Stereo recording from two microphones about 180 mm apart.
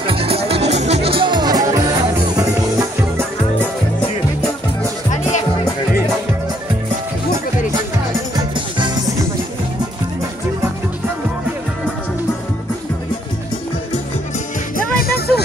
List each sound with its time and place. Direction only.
0.0 s music: 30° right (ahead or behind)
8.4 s music: 25° right (ahead or behind)
15.0 s music: 60° left (ahead or behind)